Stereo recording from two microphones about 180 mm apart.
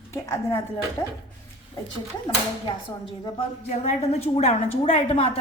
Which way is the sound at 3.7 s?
35° left (ahead or behind).